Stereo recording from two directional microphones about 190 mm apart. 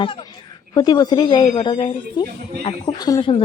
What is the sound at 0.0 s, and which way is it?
A woman's voice, 25° left (ahead or behind).